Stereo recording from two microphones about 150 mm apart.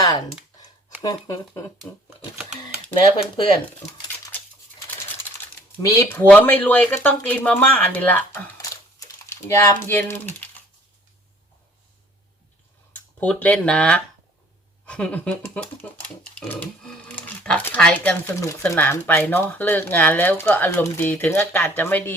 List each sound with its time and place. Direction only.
0.0 s a sound: 25° left (ahead or behind)
1.0 s speech: 20° left (ahead or behind)
5.7 s speech: 20° left (ahead or behind)
8.7 s typing: 20° left (ahead or behind)
13.1 s speech: 10° left (ahead or behind)